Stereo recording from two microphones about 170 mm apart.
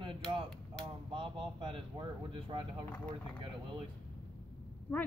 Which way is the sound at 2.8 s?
10° left (ahead or behind).